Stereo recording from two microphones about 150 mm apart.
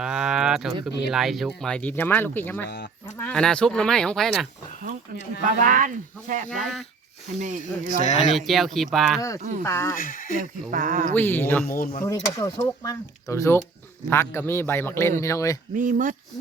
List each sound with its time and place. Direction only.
0.0 s speech: 5° right (ahead or behind)
5.4 s speech: 55° right (ahead or behind)
7.6 s speech: 50° left (ahead or behind)
8.2 s speech: centre (ahead or behind)
9.6 s speech: 20° left (ahead or behind)
9.9 s speech: 65° left (ahead or behind)
10.3 s speech: 60° right (ahead or behind)
11.1 s a man's voice: 15° left (ahead or behind)
11.8 s speech: 60° left (ahead or behind)
12.0 s a man's voice: 25° left (ahead or behind)
15.7 s speech: 60° right (ahead or behind)